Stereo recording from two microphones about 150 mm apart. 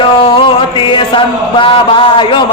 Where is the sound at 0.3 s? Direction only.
35° left (ahead or behind).